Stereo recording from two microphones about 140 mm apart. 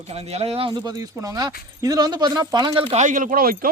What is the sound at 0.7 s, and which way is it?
Speech, 25° right (ahead or behind).